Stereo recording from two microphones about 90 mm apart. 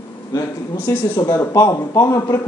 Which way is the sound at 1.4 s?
35° left (ahead or behind).